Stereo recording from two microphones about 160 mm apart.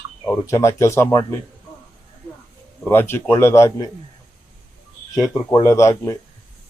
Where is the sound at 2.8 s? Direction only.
15° left (ahead or behind).